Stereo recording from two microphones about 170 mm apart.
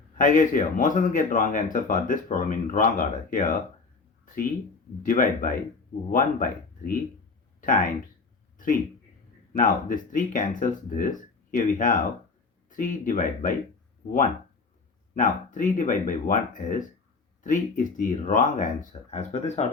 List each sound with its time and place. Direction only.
0.2 s speech: 50° left (ahead or behind)
5.0 s speech: 55° left (ahead or behind)
8.5 s a sound: 55° left (ahead or behind)
9.5 s speech: 50° left (ahead or behind)
15.1 s speech: 50° left (ahead or behind)